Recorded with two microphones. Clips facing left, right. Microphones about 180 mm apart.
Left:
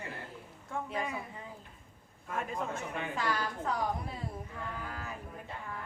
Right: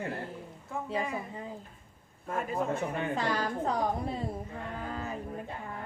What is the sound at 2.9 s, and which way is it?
A woman's voice, 35° right (ahead or behind).